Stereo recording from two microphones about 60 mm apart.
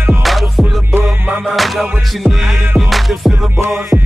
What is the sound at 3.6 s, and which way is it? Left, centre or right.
Music, right.